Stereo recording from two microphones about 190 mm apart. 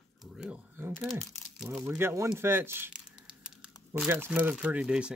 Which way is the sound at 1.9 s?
15° right (ahead or behind).